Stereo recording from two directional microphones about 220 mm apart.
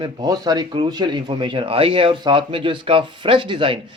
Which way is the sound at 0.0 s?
20° right (ahead or behind).